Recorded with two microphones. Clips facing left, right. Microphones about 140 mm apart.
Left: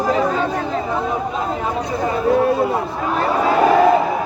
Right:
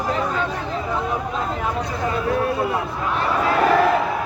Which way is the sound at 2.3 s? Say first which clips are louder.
Left 7 dB; 35° left (ahead or behind).